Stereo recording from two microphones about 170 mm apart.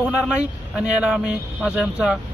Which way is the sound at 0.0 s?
5° right (ahead or behind).